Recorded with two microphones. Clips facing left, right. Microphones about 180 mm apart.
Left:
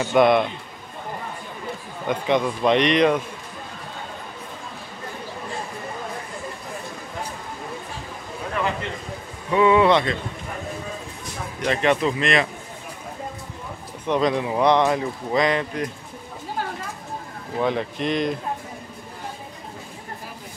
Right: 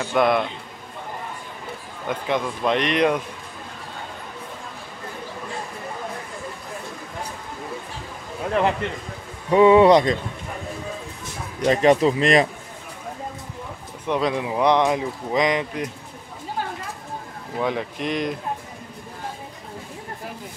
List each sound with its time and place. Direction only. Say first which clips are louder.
0.0 s a man's voice: left 3 dB; centre (ahead or behind)
2.0 s a man's voice: left 3 dB; 5° right (ahead or behind)
9.5 s speech: right 4 dB; 30° right (ahead or behind)
11.6 s speech: right 4 dB; 40° right (ahead or behind)
14.0 s speech: left 2 dB; 10° right (ahead or behind)
17.6 s speech: left 2 dB; 5° right (ahead or behind)